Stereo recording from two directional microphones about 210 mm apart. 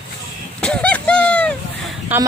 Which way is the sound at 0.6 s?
5° left (ahead or behind).